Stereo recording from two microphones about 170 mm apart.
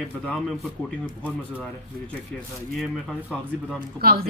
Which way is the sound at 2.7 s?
Centre (ahead or behind).